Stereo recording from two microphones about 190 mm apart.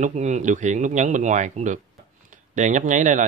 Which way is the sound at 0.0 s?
40° right (ahead or behind).